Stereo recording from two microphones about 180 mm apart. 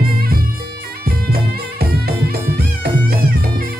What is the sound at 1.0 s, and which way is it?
Music, 55° right (ahead or behind).